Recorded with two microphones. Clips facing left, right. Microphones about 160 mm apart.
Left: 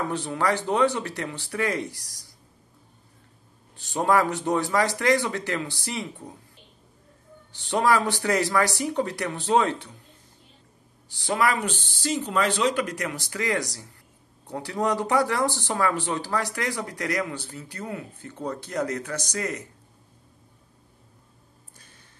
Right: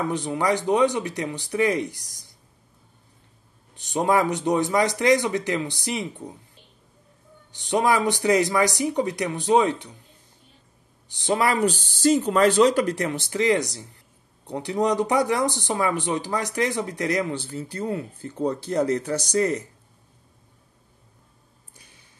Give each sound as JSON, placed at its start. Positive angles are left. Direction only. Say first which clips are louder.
{"t": 0.0, "sound": "speech", "louder": "right 2 dB", "side_deg": -15}
{"t": 3.7, "sound": "speech", "louder": "right 1 dB", "side_deg": -20}
{"t": 7.5, "sound": "speech", "louder": "right 1 dB", "side_deg": -15}
{"t": 11.1, "sound": "speech", "louder": "right 2 dB", "side_deg": -20}
{"t": 21.7, "sound": "a sound", "louder": "right 1 dB", "side_deg": -15}